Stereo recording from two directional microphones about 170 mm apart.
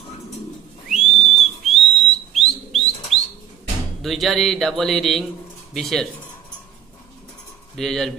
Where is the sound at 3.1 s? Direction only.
35° right (ahead or behind).